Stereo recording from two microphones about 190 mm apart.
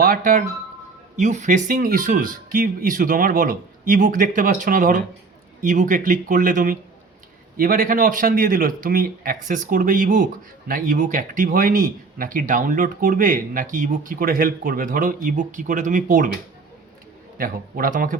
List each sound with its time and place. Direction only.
0.0 s speech: 45° right (ahead or behind)
17.3 s speech: 50° right (ahead or behind)